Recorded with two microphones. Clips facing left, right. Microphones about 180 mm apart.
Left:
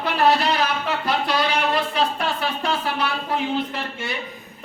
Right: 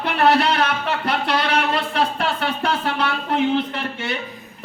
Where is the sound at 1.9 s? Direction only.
65° right (ahead or behind).